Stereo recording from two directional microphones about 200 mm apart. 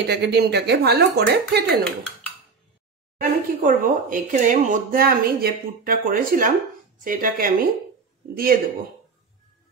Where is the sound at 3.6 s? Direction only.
40° right (ahead or behind).